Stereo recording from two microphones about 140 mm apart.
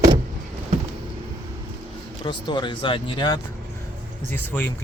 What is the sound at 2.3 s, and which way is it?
Speech, 35° left (ahead or behind).